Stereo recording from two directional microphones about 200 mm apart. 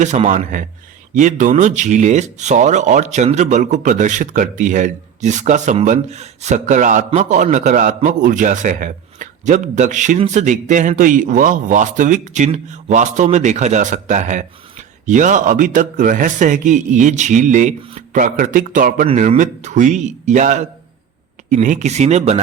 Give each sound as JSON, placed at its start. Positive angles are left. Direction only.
{"t": 0.0, "sound": "speech", "side_deg": -35}
{"t": 19.0, "sound": "speech", "side_deg": -35}